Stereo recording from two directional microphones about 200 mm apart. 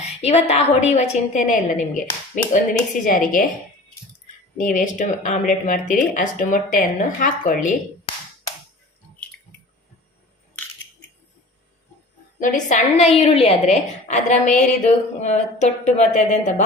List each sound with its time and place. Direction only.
0.0 s a woman's voice: 30° left (ahead or behind)
4.5 s speech: 40° left (ahead or behind)
12.4 s speech: 40° left (ahead or behind)